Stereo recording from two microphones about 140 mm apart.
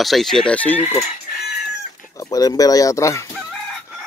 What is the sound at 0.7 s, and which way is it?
Chicken, 45° left (ahead or behind).